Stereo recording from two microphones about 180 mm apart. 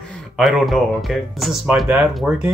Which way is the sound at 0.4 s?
Centre (ahead or behind).